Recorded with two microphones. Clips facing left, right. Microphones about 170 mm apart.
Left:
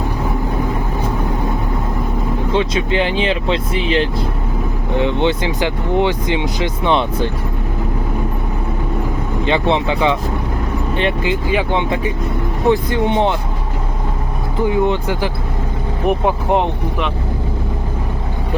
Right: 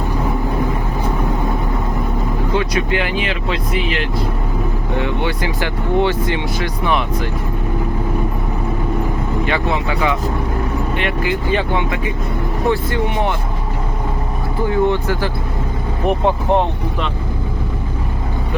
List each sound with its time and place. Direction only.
2.5 s speech: 25° left (ahead or behind)
9.5 s speech: 25° left (ahead or behind)
14.6 s speech: 15° left (ahead or behind)